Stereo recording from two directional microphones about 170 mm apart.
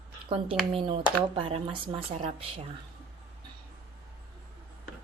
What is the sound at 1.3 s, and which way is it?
Speech, 35° right (ahead or behind).